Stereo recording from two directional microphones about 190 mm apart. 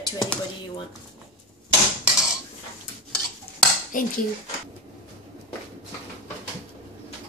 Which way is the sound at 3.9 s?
45° left (ahead or behind).